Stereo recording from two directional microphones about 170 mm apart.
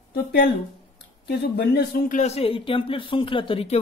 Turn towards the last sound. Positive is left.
turn(degrees=35)  # may be behind; listen again after turning